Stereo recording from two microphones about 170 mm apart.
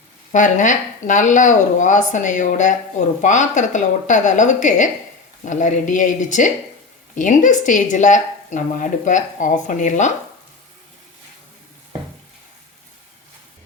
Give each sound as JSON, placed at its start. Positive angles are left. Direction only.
{"t": 0.3, "sound": "speech", "side_deg": 45}